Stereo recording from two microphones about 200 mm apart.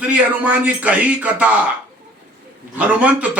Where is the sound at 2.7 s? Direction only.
5° right (ahead or behind).